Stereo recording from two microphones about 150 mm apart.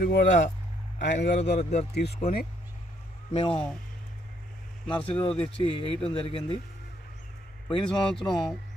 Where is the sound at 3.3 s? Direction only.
40° left (ahead or behind).